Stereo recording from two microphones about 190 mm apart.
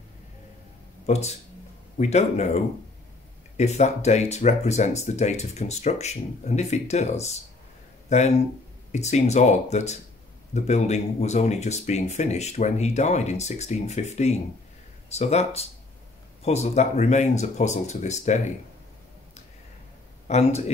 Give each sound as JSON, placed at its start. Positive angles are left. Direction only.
{"t": 1.0, "sound": "speech", "side_deg": 35}
{"t": 20.2, "sound": "speech", "side_deg": 35}